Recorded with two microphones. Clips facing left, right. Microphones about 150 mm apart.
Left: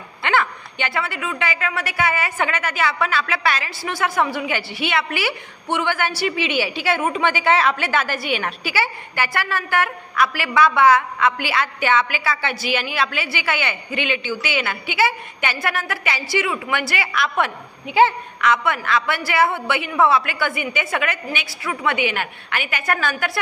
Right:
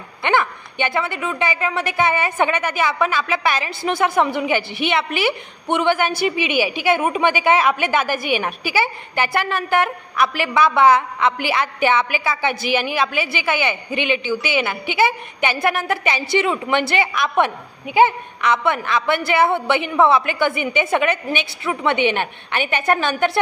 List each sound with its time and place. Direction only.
0.2 s a woman's voice: 20° right (ahead or behind)